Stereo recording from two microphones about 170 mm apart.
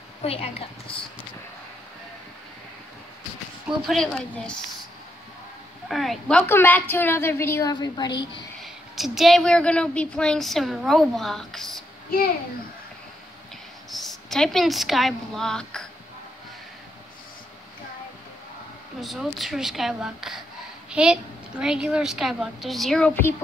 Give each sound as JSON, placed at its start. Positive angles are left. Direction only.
{"t": 0.2, "sound": "a woman's voice", "side_deg": 35}
{"t": 3.6, "sound": "a woman's voice", "side_deg": 0}
{"t": 5.9, "sound": "a woman's voice", "side_deg": 0}
{"t": 7.7, "sound": "a woman's voice", "side_deg": 25}
{"t": 8.6, "sound": "a woman's voice", "side_deg": 0}
{"t": 13.8, "sound": "a woman's voice", "side_deg": 0}
{"t": 18.9, "sound": "a woman's voice", "side_deg": 0}